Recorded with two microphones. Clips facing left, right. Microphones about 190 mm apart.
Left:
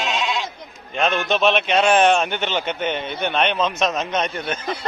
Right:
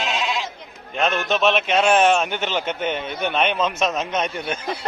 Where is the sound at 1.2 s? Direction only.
Centre (ahead or behind).